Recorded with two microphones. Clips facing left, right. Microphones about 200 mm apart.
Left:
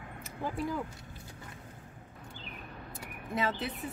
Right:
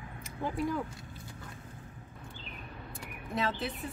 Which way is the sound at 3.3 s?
5° left (ahead or behind).